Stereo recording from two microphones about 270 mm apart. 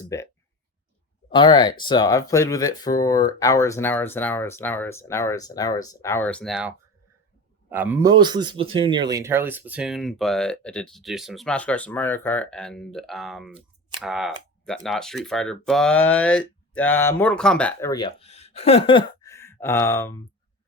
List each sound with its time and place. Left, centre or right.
0.0 s speech: centre
1.3 s a man's voice: centre